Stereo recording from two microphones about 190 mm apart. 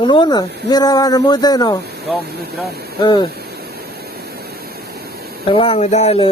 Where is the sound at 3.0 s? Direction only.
25° left (ahead or behind).